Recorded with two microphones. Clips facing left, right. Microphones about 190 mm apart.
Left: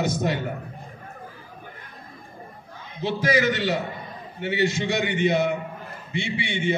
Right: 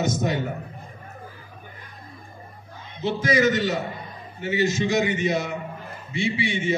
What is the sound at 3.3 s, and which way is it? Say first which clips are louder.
A man's voice: right 2 dB; 65° left (ahead or behind).